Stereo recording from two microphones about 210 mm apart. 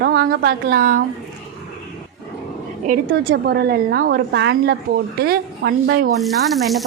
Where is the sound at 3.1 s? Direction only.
50° right (ahead or behind).